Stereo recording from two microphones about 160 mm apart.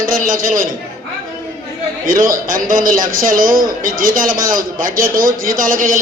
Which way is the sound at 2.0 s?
60° right (ahead or behind).